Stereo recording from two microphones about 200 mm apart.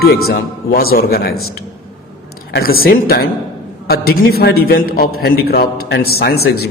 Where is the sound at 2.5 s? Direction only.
50° left (ahead or behind).